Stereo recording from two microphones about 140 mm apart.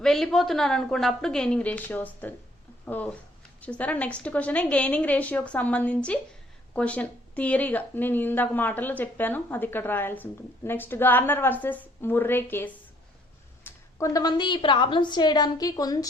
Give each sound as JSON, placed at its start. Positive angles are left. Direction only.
{"t": 0.0, "sound": "a woman's voice", "side_deg": 5}